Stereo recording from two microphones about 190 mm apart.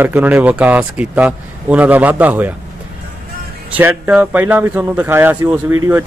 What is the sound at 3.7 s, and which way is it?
Speech, 10° right (ahead or behind).